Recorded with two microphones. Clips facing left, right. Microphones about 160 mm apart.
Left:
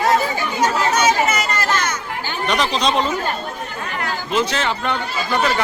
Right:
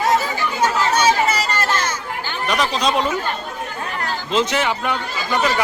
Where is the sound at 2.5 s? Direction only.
5° right (ahead or behind).